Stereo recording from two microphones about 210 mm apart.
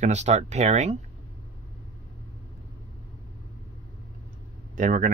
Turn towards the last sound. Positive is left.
turn(degrees=-40)  # may be behind; listen again after turning